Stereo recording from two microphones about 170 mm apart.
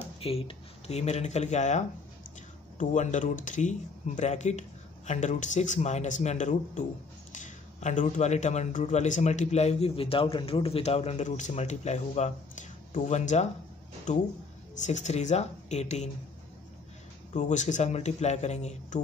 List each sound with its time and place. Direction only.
0.2 s a man's voice: 35° left (ahead or behind)
17.3 s a man's voice: 45° left (ahead or behind)